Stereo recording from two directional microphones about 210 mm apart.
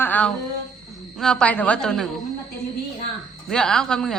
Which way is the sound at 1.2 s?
5° left (ahead or behind).